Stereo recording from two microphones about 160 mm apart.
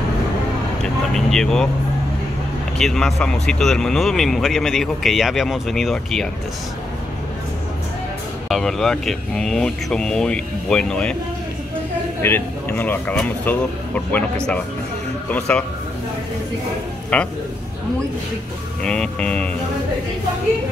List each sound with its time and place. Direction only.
1.1 s speech: 5° left (ahead or behind)
2.8 s speech: centre (ahead or behind)
8.5 s speech: centre (ahead or behind)
12.2 s speech: 15° left (ahead or behind)
17.1 s speech: 10° left (ahead or behind)
18.8 s speech: 5° left (ahead or behind)